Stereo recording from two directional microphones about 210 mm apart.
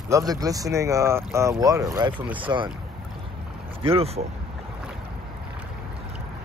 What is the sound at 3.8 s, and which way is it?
Speech, 30° right (ahead or behind).